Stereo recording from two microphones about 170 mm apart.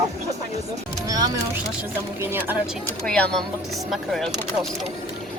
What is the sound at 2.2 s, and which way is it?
Speech, 10° right (ahead or behind).